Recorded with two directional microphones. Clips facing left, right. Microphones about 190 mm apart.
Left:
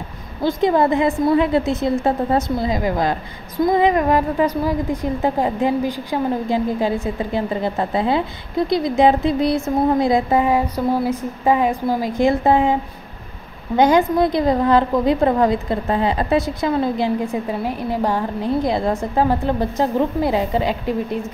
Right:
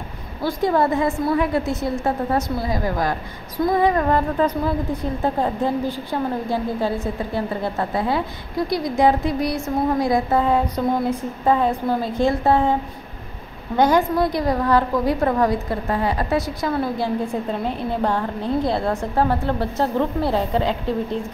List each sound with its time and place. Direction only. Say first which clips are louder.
0.4 s a woman's voice: left 3 dB; 20° left (ahead or behind)
13.7 s a woman's voice: left 3 dB; 20° left (ahead or behind)
17.3 s a woman's voice: left 1 dB; 10° left (ahead or behind)